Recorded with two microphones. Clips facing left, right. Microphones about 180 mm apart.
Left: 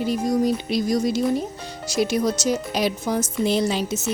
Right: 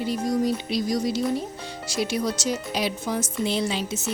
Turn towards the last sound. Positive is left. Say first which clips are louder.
# left 4 dB
turn(degrees=45)  # may be behind; listen again after turning